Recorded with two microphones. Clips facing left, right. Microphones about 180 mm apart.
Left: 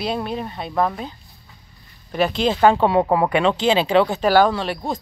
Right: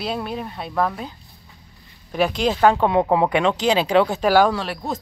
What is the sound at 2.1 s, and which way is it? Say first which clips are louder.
Speech: left 1 dB; 5° right (ahead or behind).